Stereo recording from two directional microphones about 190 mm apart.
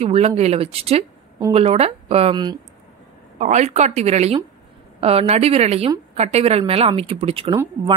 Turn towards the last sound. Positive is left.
turn(degrees=-30)  # may be behind; listen again after turning